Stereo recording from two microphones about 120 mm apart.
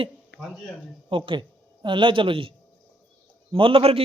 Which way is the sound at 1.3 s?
40° right (ahead or behind).